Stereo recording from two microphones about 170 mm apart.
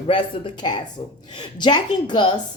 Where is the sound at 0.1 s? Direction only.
30° left (ahead or behind).